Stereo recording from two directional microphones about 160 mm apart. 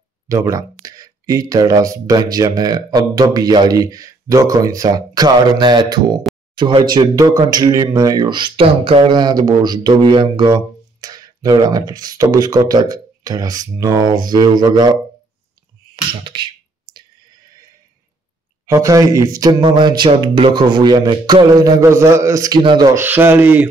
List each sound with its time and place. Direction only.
0.3 s speech: 20° right (ahead or behind)
16.1 s a sound: 30° right (ahead or behind)
18.7 s speech: 20° right (ahead or behind)
22.9 s speech: 15° right (ahead or behind)